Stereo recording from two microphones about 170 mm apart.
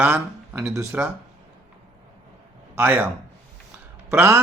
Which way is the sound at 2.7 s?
10° right (ahead or behind).